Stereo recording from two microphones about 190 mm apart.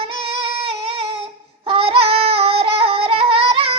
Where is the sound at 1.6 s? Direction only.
30° right (ahead or behind).